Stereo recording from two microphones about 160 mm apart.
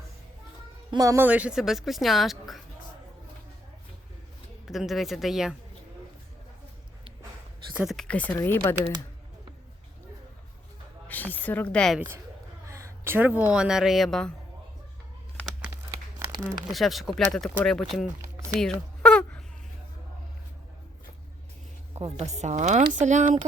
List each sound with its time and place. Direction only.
0.9 s speech: 20° right (ahead or behind); by 2.6 s centre (ahead or behind)
4.6 s speech: centre (ahead or behind)
7.7 s speech: 5° right (ahead or behind); by 8.9 s 15° left (ahead or behind)
11.1 s speech: 10° left (ahead or behind)
11.9 s speech: 15° right (ahead or behind); by 14.3 s 5° left (ahead or behind)
15.9 s crumpling: 20° right (ahead or behind)
16.7 s speech: centre (ahead or behind)
17.9 s a sound: 5° left (ahead or behind)
21.9 s a woman's voice: 45° right (ahead or behind)